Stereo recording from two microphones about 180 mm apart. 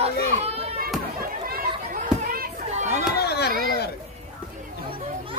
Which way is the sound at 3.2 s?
65° left (ahead or behind).